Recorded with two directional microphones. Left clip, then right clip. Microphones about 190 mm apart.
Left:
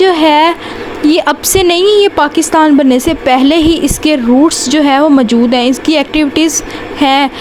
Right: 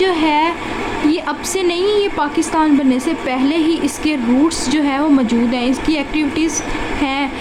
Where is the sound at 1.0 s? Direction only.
45° left (ahead or behind).